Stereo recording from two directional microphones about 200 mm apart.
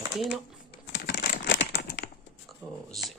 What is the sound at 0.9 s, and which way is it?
Crumpling, 55° left (ahead or behind).